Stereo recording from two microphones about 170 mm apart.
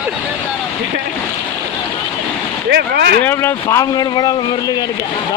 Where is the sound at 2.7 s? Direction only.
75° right (ahead or behind).